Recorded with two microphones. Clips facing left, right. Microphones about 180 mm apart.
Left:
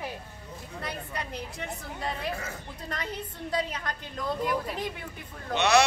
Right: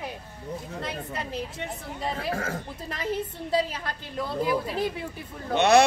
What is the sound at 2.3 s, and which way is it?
Speech, 90° right.